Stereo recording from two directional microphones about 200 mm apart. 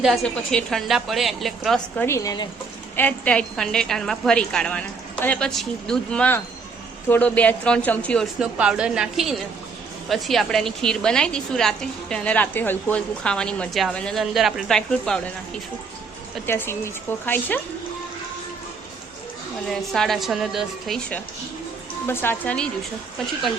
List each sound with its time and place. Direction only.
0.0 s a woman's voice: centre (ahead or behind)
2.0 s speech: 15° left (ahead or behind)
2.9 s a woman's voice: 10° left (ahead or behind)
16.5 s speech: 10° left (ahead or behind)
19.7 s a woman's voice: centre (ahead or behind)